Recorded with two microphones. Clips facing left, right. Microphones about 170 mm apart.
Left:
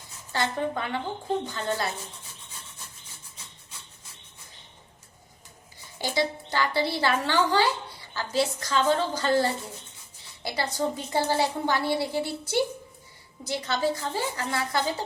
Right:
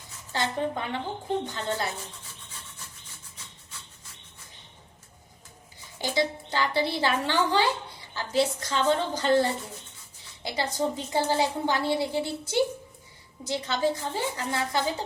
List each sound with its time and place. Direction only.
0.3 s a woman's voice: 20° right (ahead or behind)
6.0 s a woman's voice: 20° right (ahead or behind)